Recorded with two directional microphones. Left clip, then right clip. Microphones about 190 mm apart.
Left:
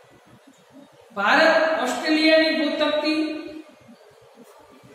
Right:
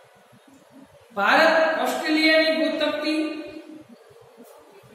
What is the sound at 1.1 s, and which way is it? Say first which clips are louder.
Speech: even; centre (ahead or behind).